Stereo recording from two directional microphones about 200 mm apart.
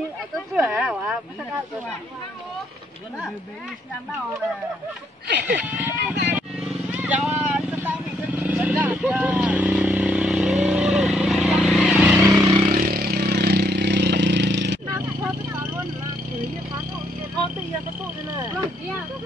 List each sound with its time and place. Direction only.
0.6 s speech: 5° right (ahead or behind)
5.6 s speech: 10° right (ahead or behind)
7.0 s vehicle: 5° right (ahead or behind)
12.6 s vehicle: 40° right (ahead or behind); by 14.8 s 60° right (ahead or behind)
14.9 s vehicle: 15° right (ahead or behind)